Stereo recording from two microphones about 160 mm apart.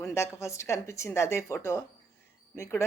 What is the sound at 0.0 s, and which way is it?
A woman's voice, 15° left (ahead or behind).